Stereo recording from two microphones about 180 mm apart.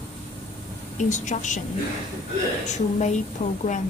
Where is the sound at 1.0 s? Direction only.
40° left (ahead or behind).